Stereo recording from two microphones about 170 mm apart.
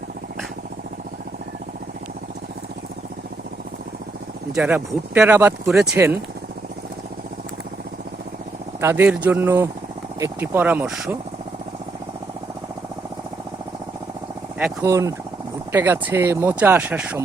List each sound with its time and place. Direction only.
4.5 s speech: 10° right (ahead or behind)
8.8 s speech: 15° right (ahead or behind)
14.8 s speech: 20° right (ahead or behind)